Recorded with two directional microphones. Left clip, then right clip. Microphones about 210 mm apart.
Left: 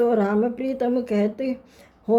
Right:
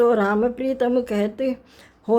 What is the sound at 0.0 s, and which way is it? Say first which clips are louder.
A woman's voice: right 2 dB; 20° right (ahead or behind).